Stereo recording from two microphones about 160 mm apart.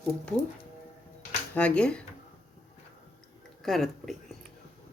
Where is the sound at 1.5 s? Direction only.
5° left (ahead or behind).